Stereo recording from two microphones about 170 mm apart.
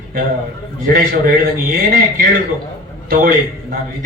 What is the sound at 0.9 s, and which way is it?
A man's voice, 60° right (ahead or behind).